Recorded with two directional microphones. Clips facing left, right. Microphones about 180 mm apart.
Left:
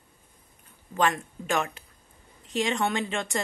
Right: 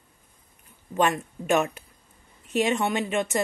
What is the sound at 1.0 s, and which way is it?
A woman's voice, 20° right (ahead or behind).